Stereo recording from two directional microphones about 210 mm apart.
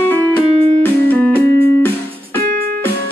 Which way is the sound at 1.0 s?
10° left (ahead or behind).